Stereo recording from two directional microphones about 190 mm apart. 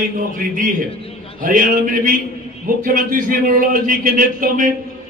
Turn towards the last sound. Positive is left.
turn(degrees=-45)  # may be behind; listen again after turning